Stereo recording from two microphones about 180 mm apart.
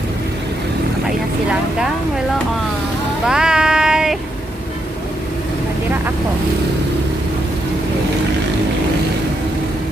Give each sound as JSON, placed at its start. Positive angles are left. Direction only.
{"t": 3.3, "sound": "music", "side_deg": -5}